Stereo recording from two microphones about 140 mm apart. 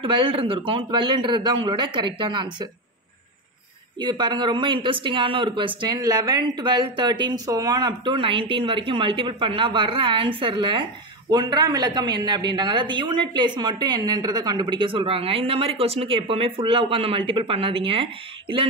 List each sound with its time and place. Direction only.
0.0 s speech: 35° right (ahead or behind)
4.0 s speech: 30° right (ahead or behind)